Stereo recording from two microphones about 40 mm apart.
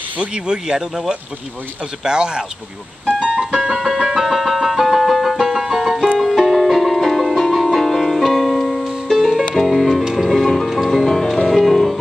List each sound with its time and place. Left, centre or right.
0.2 s speech: right
3.3 s music: centre